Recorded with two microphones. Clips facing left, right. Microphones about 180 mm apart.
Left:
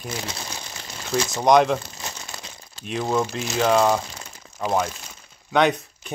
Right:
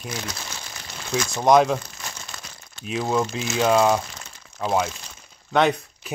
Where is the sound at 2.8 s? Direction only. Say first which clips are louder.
Even; centre (ahead or behind).